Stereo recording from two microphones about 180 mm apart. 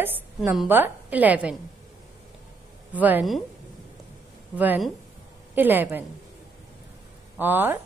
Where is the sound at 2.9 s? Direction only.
10° right (ahead or behind).